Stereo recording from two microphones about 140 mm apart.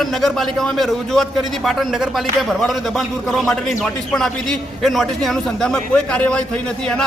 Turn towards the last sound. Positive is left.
turn(degrees=5)  # may be behind; listen again after turning